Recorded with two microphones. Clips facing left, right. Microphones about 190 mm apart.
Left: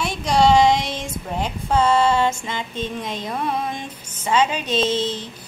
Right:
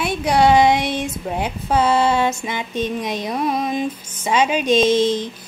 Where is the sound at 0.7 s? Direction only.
65° right (ahead or behind).